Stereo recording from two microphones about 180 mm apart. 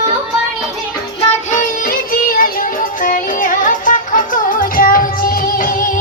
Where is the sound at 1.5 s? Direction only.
50° left (ahead or behind).